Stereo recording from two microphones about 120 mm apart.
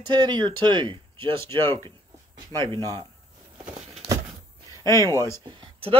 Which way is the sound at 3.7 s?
60° right (ahead or behind).